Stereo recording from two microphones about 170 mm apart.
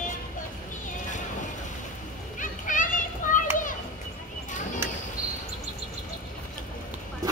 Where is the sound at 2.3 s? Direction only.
50° left (ahead or behind).